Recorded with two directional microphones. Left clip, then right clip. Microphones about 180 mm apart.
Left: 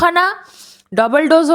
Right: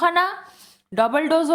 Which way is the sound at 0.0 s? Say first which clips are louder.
Left 6 dB; 40° left (ahead or behind).